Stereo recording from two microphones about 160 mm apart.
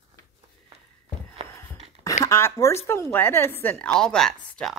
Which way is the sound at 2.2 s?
15° left (ahead or behind).